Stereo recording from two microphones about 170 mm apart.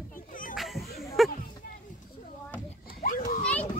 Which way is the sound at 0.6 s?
Centre (ahead or behind).